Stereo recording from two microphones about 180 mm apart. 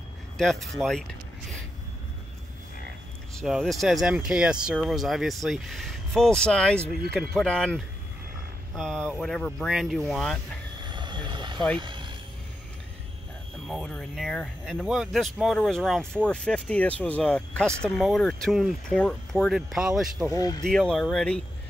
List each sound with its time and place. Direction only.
0.4 s speech: centre (ahead or behind)
3.3 s speech: centre (ahead or behind)
10.8 s vehicle: 25° right (ahead or behind)
11.7 s a sound: 25° right (ahead or behind)
13.7 s speech: 5° left (ahead or behind)
20.3 s speech: 20° left (ahead or behind)
20.6 s speech: 5° left (ahead or behind)